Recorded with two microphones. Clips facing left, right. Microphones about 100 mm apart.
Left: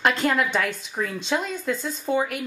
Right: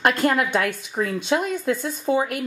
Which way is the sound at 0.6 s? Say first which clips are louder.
Right 3 dB; 55° right (ahead or behind).